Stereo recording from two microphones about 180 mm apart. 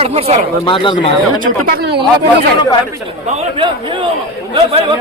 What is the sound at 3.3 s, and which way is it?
A man's voice, 30° right (ahead or behind).